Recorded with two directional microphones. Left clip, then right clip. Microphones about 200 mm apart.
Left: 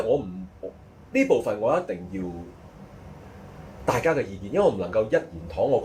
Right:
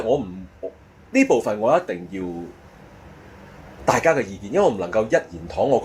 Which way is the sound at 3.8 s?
40° right (ahead or behind).